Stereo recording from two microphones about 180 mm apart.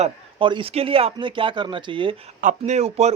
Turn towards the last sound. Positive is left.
turn(degrees=-35)  # may be behind; listen again after turning